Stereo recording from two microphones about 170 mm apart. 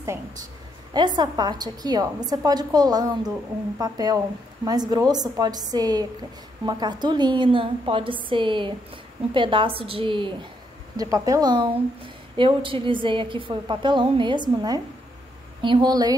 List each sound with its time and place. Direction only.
0.9 s a woman's voice: 25° right (ahead or behind)